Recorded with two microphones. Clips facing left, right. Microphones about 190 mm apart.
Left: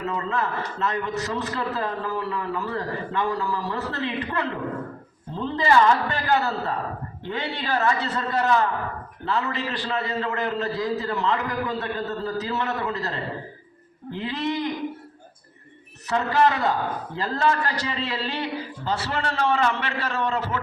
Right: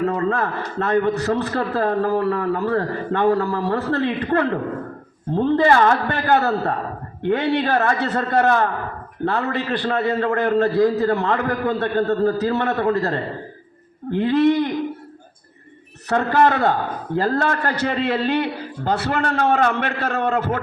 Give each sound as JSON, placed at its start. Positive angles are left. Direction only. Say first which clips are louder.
{"t": 0.0, "sound": "a man's voice", "louder": "right 6 dB", "side_deg": -55}
{"t": 16.0, "sound": "a man's voice", "louder": "right 4 dB", "side_deg": -55}